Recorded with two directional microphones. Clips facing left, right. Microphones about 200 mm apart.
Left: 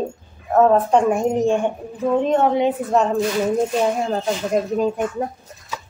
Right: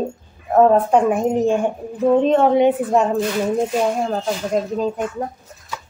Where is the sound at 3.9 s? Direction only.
Centre (ahead or behind).